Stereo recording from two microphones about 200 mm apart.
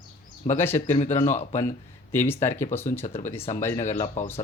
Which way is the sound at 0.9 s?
35° left (ahead or behind).